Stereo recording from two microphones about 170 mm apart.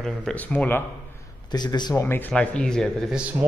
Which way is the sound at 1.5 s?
25° left (ahead or behind).